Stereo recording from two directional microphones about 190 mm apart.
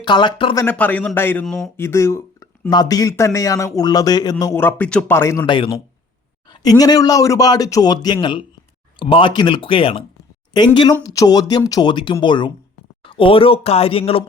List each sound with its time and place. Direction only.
0.0 s speech: 25° left (ahead or behind)
0.6 s a man's voice: 10° left (ahead or behind)
5.5 s speech: 25° left (ahead or behind)